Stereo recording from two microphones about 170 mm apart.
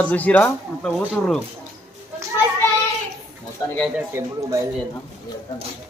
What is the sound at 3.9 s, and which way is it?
Speech, 15° right (ahead or behind).